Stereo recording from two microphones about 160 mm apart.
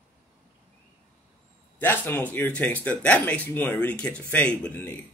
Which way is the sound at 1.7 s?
10° left (ahead or behind).